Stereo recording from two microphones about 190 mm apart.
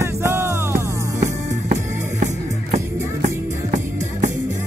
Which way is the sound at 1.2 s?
40° right (ahead or behind).